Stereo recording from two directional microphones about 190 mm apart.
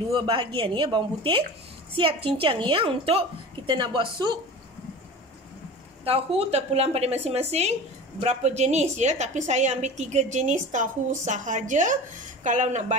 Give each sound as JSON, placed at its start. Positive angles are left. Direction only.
{"t": 0.1, "sound": "a woman's voice", "side_deg": -25}
{"t": 6.0, "sound": "a woman's voice", "side_deg": -30}